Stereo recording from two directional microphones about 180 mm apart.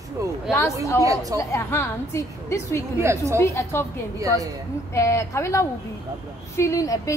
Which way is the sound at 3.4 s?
15° left (ahead or behind).